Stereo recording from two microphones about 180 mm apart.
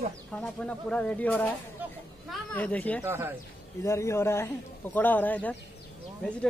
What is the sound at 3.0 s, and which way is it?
Speech, 15° right (ahead or behind).